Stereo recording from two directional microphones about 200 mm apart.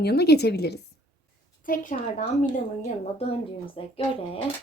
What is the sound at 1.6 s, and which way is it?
Speech, 40° left (ahead or behind).